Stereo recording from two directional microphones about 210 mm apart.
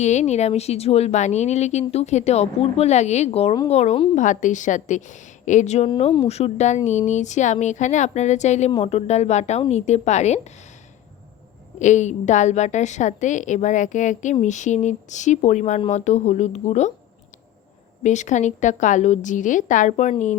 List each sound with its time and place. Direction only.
0.0 s a woman's voice: 35° left (ahead or behind)
11.8 s a woman's voice: 35° left (ahead or behind)
18.0 s a woman's voice: 35° left (ahead or behind)